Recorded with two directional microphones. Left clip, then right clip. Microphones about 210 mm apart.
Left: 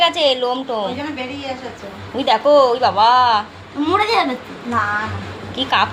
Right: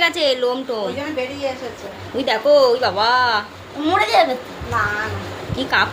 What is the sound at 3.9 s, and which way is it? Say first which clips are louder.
Speech: right 1 dB; 25° right (ahead or behind).